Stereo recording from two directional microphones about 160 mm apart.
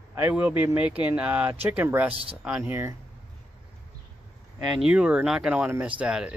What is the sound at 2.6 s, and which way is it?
Speech, 15° right (ahead or behind).